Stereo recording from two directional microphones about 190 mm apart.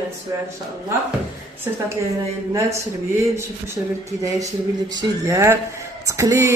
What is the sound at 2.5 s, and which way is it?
Speech, 15° right (ahead or behind).